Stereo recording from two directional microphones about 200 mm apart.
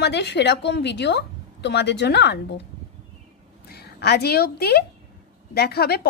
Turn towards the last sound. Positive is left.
turn(degrees=50)  # may be behind; listen again after turning